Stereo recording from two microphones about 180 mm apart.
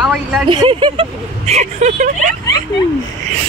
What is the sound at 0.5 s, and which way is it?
Speech, 30° right (ahead or behind).